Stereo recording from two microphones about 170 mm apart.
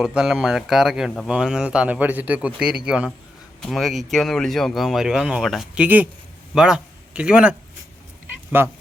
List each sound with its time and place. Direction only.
0.0 s a man's voice: 5° right (ahead or behind)